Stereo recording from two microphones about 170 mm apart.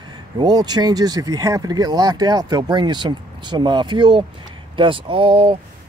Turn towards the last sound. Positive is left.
turn(degrees=-35)  # may be behind; listen again after turning